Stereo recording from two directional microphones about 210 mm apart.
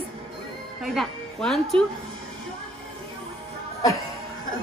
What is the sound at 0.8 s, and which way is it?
A woman's voice, centre (ahead or behind).